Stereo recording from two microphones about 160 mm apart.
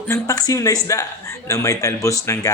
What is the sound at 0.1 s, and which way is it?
A man's voice, 20° left (ahead or behind).